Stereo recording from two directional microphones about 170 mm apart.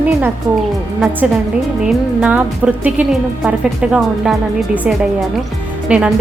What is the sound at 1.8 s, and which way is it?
A woman's voice, 5° right (ahead or behind).